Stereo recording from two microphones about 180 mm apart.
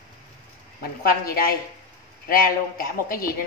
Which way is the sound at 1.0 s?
55° left (ahead or behind).